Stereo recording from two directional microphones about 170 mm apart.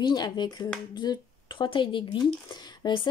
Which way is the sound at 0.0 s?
25° left (ahead or behind).